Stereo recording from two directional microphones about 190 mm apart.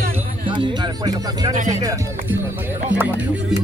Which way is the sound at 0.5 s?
25° right (ahead or behind).